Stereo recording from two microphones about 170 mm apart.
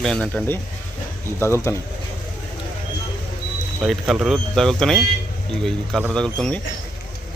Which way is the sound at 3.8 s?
Centre (ahead or behind).